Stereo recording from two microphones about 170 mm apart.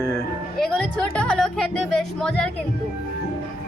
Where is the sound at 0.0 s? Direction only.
15° left (ahead or behind).